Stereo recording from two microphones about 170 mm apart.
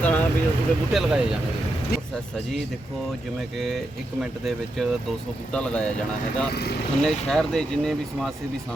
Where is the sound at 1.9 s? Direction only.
65° left (ahead or behind).